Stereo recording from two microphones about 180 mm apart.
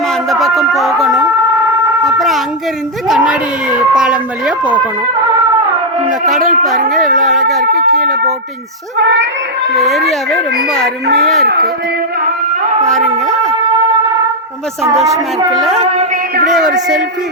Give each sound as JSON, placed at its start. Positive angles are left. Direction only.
{"t": 0.3, "sound": "music", "side_deg": 0}
{"t": 2.1, "sound": "a sound", "side_deg": 0}
{"t": 6.4, "sound": "speech", "side_deg": -45}
{"t": 7.2, "sound": "speech", "side_deg": 0}
{"t": 9.0, "sound": "cat", "side_deg": -75}
{"t": 9.7, "sound": "speech", "side_deg": 0}
{"t": 11.4, "sound": "speech", "side_deg": -65}
{"t": 12.9, "sound": "speech", "side_deg": 0}
{"t": 14.8, "sound": "a woman's voice", "side_deg": -15}
{"t": 15.5, "sound": "speech", "side_deg": 0}